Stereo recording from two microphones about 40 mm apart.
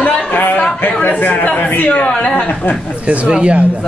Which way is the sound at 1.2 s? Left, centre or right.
Left.